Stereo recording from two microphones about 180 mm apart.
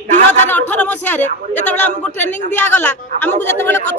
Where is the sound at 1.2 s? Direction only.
40° left (ahead or behind).